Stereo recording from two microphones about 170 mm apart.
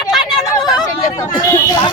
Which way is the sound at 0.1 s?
Centre (ahead or behind).